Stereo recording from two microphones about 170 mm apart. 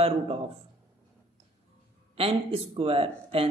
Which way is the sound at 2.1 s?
35° right (ahead or behind).